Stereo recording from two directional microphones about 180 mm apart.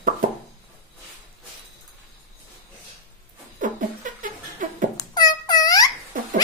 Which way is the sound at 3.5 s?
45° right (ahead or behind).